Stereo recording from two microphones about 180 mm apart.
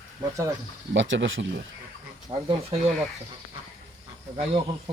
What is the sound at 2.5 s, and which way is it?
Speech, 30° right (ahead or behind).